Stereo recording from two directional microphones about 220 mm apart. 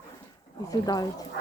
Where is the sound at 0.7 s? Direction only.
15° left (ahead or behind).